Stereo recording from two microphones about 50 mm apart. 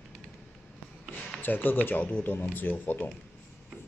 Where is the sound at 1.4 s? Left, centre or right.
Left.